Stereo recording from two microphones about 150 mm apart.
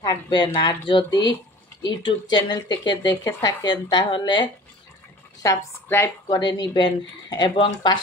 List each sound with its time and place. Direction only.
0.0 s speech: 25° left (ahead or behind)
3.3 s speech: 15° left (ahead or behind)
3.6 s speech: 30° left (ahead or behind)
5.4 s speech: 20° left (ahead or behind)
6.2 s speech: 30° left (ahead or behind)